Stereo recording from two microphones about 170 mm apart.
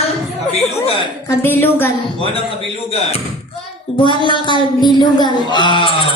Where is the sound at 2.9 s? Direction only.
35° left (ahead or behind).